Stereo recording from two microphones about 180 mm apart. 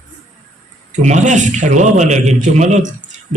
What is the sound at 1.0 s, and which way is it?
A man's voice, 40° right (ahead or behind).